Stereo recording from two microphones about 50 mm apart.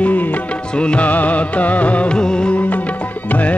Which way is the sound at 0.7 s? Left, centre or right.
Left.